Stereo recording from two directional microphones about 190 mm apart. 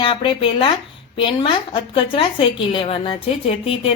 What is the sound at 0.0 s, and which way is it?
A woman's voice, 25° left (ahead or behind).